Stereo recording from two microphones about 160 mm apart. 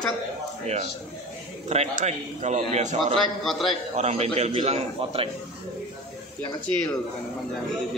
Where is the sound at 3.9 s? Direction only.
45° right (ahead or behind).